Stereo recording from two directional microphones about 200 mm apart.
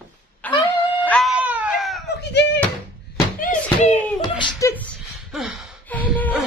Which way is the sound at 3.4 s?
40° left (ahead or behind).